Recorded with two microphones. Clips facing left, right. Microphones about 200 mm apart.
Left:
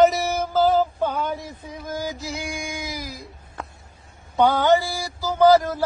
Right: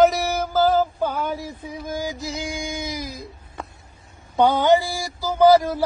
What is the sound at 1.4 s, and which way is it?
Mantra, 15° right (ahead or behind).